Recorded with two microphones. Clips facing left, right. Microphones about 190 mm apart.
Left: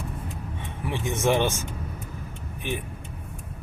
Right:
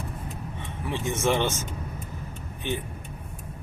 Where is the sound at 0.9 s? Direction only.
15° left (ahead or behind).